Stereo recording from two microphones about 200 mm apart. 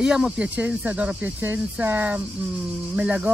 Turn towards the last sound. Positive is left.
turn(degrees=-5)  # may be behind; listen again after turning